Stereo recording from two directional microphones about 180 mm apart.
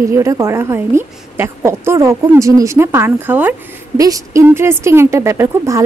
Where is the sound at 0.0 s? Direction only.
15° right (ahead or behind).